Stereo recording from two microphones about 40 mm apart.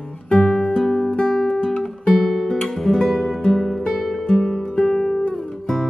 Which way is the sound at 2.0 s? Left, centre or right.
Centre.